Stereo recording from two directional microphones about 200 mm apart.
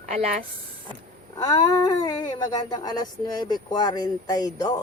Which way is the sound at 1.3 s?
15° left (ahead or behind).